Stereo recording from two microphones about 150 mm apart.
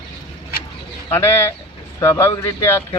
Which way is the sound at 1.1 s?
15° left (ahead or behind).